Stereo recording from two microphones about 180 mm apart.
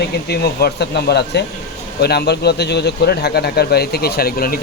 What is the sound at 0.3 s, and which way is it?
Speech, 65° left (ahead or behind).